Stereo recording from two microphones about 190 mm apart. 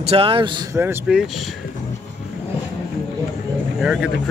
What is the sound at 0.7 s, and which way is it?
Speech, 10° right (ahead or behind).